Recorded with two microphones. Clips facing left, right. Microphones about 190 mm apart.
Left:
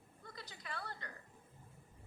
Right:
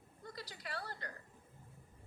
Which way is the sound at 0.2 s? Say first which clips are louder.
Right 4 dB; 35° right (ahead or behind).